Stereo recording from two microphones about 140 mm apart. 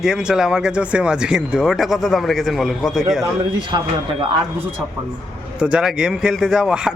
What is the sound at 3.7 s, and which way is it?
Speech, 30° right (ahead or behind).